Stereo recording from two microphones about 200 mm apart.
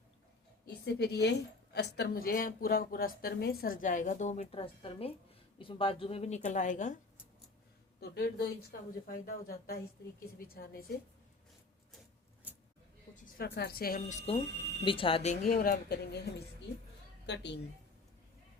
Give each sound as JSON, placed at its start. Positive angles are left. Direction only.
{"t": 0.7, "sound": "a woman's voice", "side_deg": 55}
{"t": 8.0, "sound": "a woman's voice", "side_deg": 50}
{"t": 13.3, "sound": "a woman's voice", "side_deg": 50}